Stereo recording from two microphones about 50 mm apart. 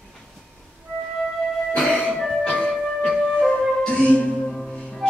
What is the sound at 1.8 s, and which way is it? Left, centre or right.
Music, centre.